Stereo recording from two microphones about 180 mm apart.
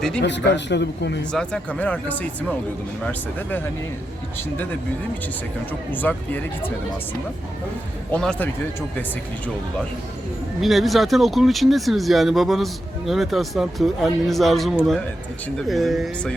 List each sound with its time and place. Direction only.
0.2 s speech: 75° left (ahead or behind)
1.3 s speech: 5° left (ahead or behind)
5.9 s speech: 10° left (ahead or behind)
8.1 s speech: 5° left (ahead or behind)
10.6 s speech: centre (ahead or behind)